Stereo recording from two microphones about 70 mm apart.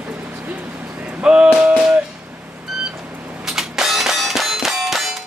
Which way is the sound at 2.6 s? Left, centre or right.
Centre.